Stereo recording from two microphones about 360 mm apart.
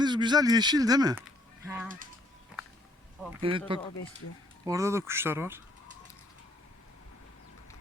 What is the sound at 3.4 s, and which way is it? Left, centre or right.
Speech, centre.